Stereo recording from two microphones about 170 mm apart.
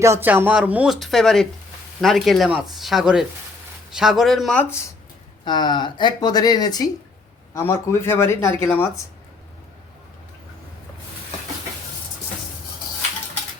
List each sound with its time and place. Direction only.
0.0 s speech: 15° right (ahead or behind); by 4.6 s centre (ahead or behind)
5.5 s speech: 25° left (ahead or behind)